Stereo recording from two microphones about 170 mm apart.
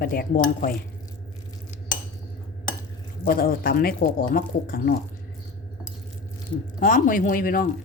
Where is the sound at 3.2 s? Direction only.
60° left (ahead or behind).